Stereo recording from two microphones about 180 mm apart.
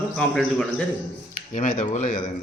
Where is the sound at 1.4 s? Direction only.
45° left (ahead or behind).